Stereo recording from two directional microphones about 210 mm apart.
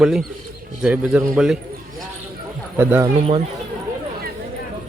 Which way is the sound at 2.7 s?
10° right (ahead or behind).